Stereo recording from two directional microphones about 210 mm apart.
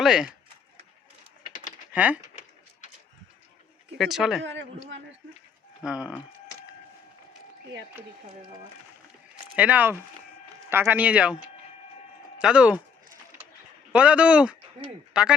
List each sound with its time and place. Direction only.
0.0 s speech: 5° right (ahead or behind)
1.9 s speech: 5° right (ahead or behind)
3.9 s speech: centre (ahead or behind)
4.4 s a man's voice: 60° right (ahead or behind)
5.8 s speech: 5° right (ahead or behind)
9.6 s speech: 5° right (ahead or behind)
12.4 s speech: 5° right (ahead or behind)
13.9 s speech: 5° right (ahead or behind)